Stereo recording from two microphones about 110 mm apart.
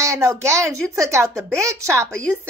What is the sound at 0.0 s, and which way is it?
Speech, 25° right (ahead or behind).